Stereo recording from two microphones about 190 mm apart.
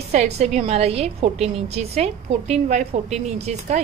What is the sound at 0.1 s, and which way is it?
A woman's voice, 35° right (ahead or behind).